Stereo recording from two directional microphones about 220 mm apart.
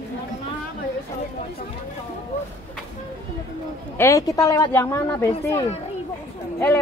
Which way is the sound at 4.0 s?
15° left (ahead or behind).